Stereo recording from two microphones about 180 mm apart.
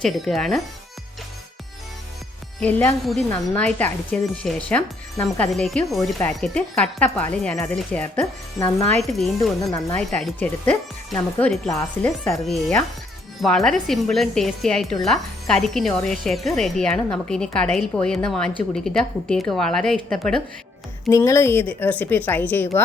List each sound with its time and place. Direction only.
0.0 s speech: centre (ahead or behind)
2.6 s speech: 10° left (ahead or behind)
9.0 s speech: centre (ahead or behind)
21.1 s speech: 15° left (ahead or behind)